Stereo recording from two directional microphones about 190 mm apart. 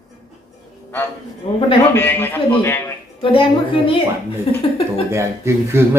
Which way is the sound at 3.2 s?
30° left (ahead or behind).